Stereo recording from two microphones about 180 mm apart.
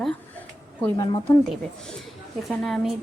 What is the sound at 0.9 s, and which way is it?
Speech, 25° left (ahead or behind).